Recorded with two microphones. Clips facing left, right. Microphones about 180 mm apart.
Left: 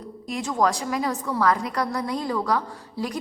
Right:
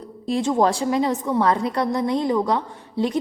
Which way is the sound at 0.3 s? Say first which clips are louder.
Right 5 dB; 30° right (ahead or behind).